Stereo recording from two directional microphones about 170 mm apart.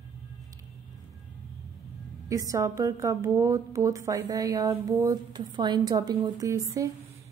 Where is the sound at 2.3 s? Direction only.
20° right (ahead or behind).